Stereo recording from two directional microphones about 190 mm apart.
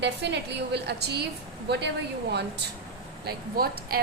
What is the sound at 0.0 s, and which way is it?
A woman's voice, 65° right (ahead or behind).